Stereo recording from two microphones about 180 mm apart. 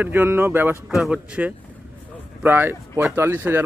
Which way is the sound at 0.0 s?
10° right (ahead or behind).